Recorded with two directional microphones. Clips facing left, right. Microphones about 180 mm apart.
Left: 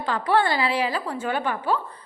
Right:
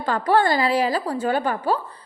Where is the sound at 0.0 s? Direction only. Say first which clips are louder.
Right 3 dB; 45° right (ahead or behind).